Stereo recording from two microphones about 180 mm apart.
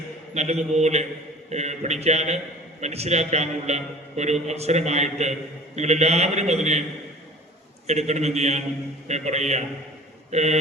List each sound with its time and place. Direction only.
0.3 s a man's voice: 40° right (ahead or behind)
7.9 s a man's voice: 40° right (ahead or behind)